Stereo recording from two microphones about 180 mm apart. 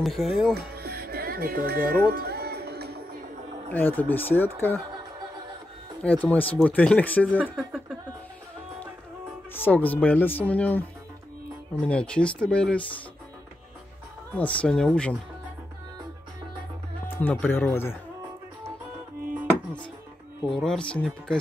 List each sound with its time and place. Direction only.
0.0 s speech: centre (ahead or behind)
0.6 s music: 60° right (ahead or behind)
3.7 s speech: 10° left (ahead or behind)
6.0 s speech: 10° left (ahead or behind)
7.5 s speech: 5° right (ahead or behind)
9.5 s speech: 10° left (ahead or behind)
14.3 s speech: 5° left (ahead or behind)
17.2 s speech: 10° left (ahead or behind)
20.4 s speech: 5° left (ahead or behind)